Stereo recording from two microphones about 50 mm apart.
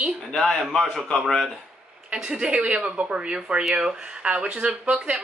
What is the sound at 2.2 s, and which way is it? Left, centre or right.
A woman's voice, right.